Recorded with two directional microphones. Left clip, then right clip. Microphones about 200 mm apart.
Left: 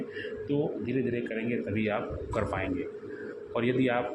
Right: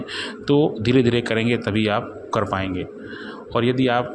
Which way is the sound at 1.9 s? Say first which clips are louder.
Right 9 dB; 25° right (ahead or behind).